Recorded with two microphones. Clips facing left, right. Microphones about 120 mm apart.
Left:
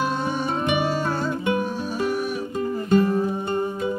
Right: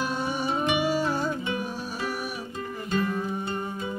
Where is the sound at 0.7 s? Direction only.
10° right (ahead or behind).